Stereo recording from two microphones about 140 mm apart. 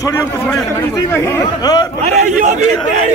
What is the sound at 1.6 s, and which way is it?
Speech, 30° left (ahead or behind).